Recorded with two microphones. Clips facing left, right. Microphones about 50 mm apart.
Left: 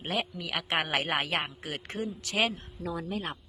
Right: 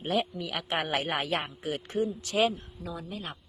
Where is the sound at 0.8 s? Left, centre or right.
Left.